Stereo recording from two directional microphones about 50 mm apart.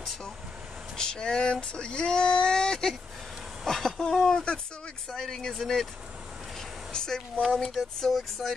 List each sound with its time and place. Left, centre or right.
0.9 s speech: centre
6.9 s a sound: centre
7.5 s speech: centre